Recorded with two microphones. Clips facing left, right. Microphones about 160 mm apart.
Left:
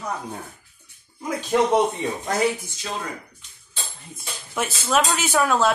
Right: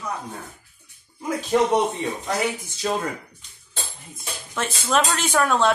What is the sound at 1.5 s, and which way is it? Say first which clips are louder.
Speech: even; centre (ahead or behind).